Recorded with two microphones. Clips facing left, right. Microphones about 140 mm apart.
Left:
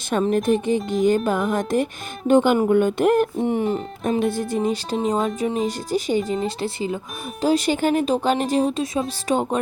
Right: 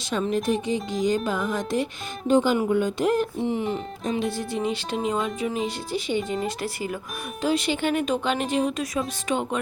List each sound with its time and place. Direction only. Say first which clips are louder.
0.1 s speech: left 5 dB; 50° left (ahead or behind)
6.6 s speech: left 4 dB; 25° left (ahead or behind)
7.4 s speech: left 5 dB; 40° left (ahead or behind)
9.3 s speech: left 5 dB; 40° left (ahead or behind)